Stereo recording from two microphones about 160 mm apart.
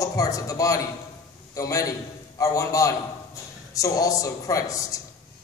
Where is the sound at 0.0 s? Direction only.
20° left (ahead or behind).